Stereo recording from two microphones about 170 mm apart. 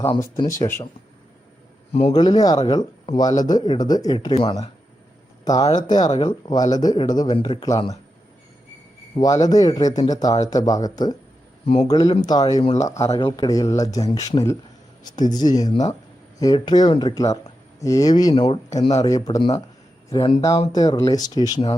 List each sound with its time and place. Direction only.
0.6 s speech: 15° left (ahead or behind)
1.9 s a man's voice: 35° left (ahead or behind)
2.1 s speech: 25° left (ahead or behind)
6.1 s speech: 35° left (ahead or behind)
6.7 s speech: 25° left (ahead or behind)
9.1 s speech: 20° left (ahead or behind)
11.6 s speech: 35° left (ahead or behind)